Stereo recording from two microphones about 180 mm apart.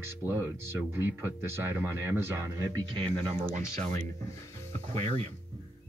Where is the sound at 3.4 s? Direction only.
35° right (ahead or behind).